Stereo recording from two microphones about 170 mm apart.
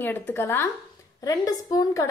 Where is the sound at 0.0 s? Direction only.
10° left (ahead or behind).